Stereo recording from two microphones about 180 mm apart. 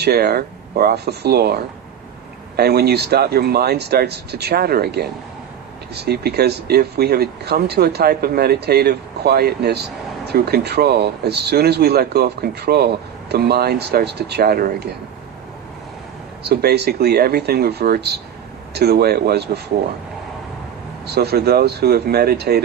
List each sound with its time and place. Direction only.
0.0 s speech: 60° right (ahead or behind)
16.4 s speech: 65° right (ahead or behind)
21.2 s speech: 60° right (ahead or behind)